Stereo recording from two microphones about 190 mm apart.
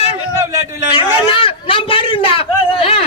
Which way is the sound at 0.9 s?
25° left (ahead or behind).